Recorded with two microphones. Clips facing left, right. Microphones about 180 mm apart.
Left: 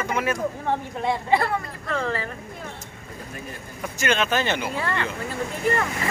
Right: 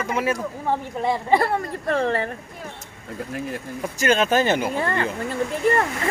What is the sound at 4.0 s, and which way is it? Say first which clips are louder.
A man's voice: right 4 dB; 40° right (ahead or behind).